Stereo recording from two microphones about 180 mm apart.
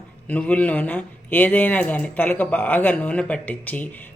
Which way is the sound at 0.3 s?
10° left (ahead or behind).